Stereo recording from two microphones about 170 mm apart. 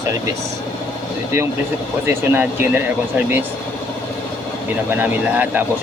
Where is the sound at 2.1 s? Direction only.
15° right (ahead or behind).